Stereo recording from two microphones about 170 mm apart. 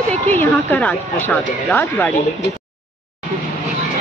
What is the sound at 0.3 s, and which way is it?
A woman's voice, 10° left (ahead or behind).